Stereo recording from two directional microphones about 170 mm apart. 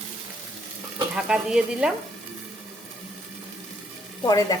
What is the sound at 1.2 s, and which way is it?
Speech, 5° right (ahead or behind).